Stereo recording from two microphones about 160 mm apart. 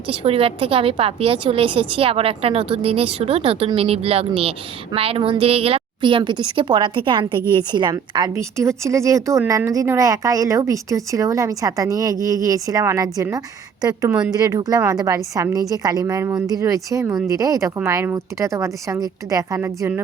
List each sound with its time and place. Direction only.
0.1 s a woman's voice: 35° right (ahead or behind); by 13.2 s 20° right (ahead or behind)
14.1 s speech: 5° right (ahead or behind)
14.3 s a woman's voice: 25° right (ahead or behind)